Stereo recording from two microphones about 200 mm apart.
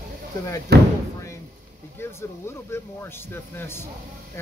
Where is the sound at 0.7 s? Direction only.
55° right (ahead or behind).